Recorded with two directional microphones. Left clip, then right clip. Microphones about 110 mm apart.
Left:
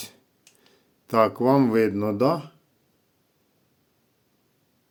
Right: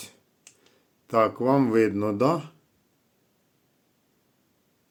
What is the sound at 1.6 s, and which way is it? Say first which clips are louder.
Speech: left 1 dB; 15° left (ahead or behind).